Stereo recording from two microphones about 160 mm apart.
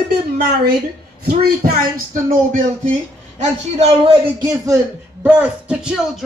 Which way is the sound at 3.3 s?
40° right (ahead or behind).